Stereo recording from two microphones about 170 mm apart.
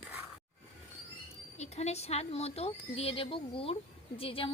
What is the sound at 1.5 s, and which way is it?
A woman's voice, 40° left (ahead or behind).